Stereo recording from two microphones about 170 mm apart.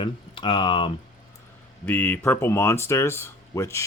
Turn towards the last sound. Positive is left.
turn(degrees=15)  # may be behind; listen again after turning